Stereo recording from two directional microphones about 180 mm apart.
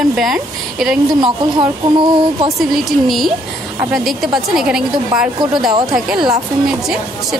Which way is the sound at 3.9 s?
Centre (ahead or behind).